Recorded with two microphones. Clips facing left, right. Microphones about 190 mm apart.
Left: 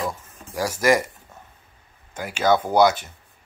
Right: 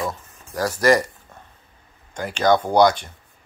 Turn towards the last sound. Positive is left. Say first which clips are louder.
# right 1 dB
turn(degrees=5)  # may be behind; listen again after turning